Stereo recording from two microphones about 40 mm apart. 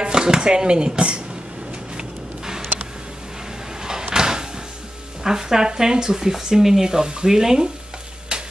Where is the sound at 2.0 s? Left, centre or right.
Centre.